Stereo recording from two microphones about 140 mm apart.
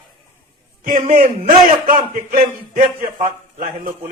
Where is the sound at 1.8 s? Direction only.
85° right.